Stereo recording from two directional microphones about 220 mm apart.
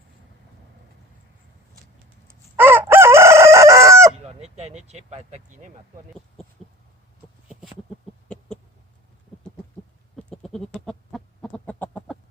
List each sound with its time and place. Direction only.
2.6 s chicken: 10° right (ahead or behind)
4.4 s speech: 30° right (ahead or behind)
7.4 s a sound: centre (ahead or behind)
10.2 s chicken: 5° left (ahead or behind)